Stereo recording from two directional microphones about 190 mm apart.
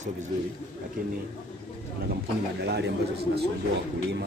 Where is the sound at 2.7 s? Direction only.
60° right (ahead or behind).